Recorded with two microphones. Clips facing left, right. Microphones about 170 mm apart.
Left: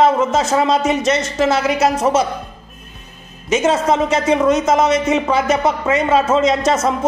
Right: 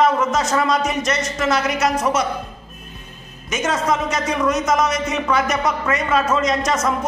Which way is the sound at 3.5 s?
30° left (ahead or behind).